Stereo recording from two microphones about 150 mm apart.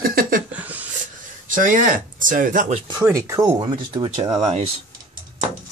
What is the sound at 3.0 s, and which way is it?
Speech, 20° right (ahead or behind).